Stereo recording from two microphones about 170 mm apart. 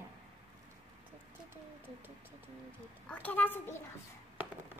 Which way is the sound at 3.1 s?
10° left (ahead or behind).